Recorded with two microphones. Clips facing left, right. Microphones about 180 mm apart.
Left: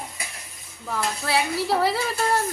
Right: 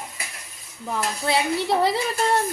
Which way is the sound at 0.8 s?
20° right (ahead or behind).